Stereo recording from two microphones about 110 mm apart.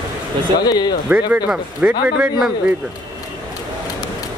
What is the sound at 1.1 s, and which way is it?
Speech, 10° right (ahead or behind).